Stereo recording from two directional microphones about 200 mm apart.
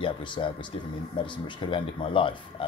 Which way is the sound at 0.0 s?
25° left (ahead or behind).